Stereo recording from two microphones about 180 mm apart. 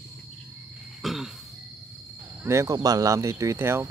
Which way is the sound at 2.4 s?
15° right (ahead or behind).